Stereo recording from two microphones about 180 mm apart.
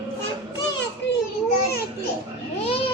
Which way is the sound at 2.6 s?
30° left (ahead or behind).